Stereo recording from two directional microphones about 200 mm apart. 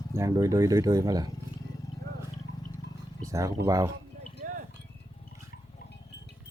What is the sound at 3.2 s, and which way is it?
Speech, 15° right (ahead or behind).